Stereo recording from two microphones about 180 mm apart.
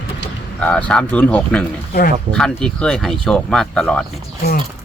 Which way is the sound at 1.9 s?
55° left (ahead or behind).